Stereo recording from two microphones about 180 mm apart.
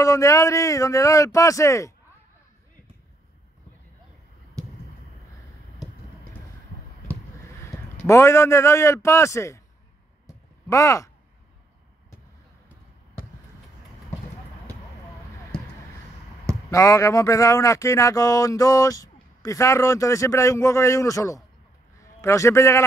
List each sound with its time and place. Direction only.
0.0 s speech: 20° left (ahead or behind)
7.7 s a man's voice: 15° left (ahead or behind)
10.2 s a sound: 15° left (ahead or behind)
16.7 s speech: 15° left (ahead or behind)